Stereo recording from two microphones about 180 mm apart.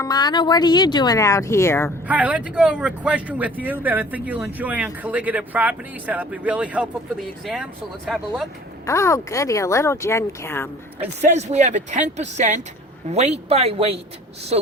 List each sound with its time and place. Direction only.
0.0 s speech: 20° left (ahead or behind)
2.0 s speech: 10° right (ahead or behind)
8.9 s speech: 15° left (ahead or behind)
11.0 s speech: 40° right (ahead or behind)